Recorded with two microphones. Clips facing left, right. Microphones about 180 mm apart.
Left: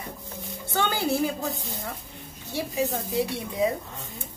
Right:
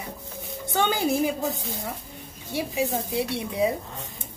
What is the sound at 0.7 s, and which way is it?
Speech, 15° right (ahead or behind).